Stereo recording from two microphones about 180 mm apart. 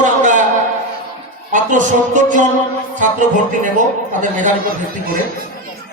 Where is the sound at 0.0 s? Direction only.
45° right (ahead or behind).